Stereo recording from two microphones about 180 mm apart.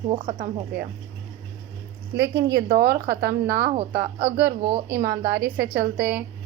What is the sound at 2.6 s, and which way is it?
A woman's voice, 60° right (ahead or behind).